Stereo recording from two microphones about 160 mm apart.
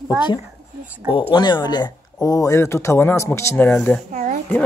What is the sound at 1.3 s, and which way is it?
Speech, 25° left (ahead or behind).